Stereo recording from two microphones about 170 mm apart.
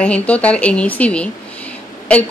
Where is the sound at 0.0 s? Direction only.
10° left (ahead or behind).